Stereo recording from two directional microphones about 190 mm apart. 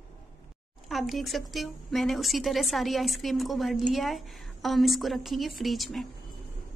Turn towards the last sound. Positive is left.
turn(degrees=0)  # may be behind; listen again after turning